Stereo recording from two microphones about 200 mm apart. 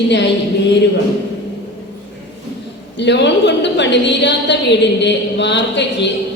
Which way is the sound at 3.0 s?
60° left (ahead or behind).